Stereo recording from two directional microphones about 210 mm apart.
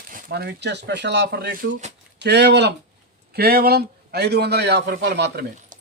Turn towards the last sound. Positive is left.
turn(degrees=-55)  # may be behind; listen again after turning